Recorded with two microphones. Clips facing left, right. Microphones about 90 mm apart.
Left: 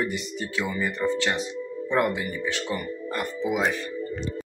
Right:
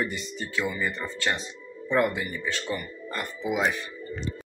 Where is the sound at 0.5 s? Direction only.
30° left (ahead or behind).